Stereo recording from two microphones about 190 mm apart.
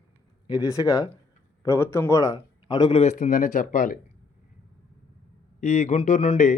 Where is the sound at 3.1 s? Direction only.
45° left (ahead or behind).